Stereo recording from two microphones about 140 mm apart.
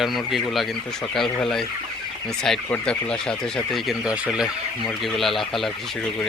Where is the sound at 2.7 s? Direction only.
5° left (ahead or behind).